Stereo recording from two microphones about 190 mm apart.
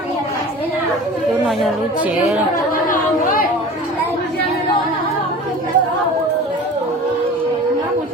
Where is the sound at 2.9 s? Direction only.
45° left (ahead or behind).